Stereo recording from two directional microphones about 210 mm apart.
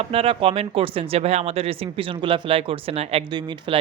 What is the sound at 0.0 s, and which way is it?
Speech, 25° right (ahead or behind).